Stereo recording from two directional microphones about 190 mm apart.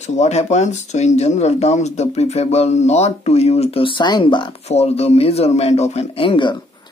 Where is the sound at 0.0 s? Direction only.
35° left (ahead or behind).